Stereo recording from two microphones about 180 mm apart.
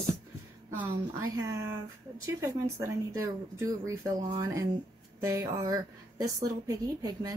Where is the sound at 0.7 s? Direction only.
15° right (ahead or behind).